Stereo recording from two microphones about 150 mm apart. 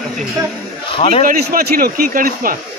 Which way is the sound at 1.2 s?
75° right (ahead or behind).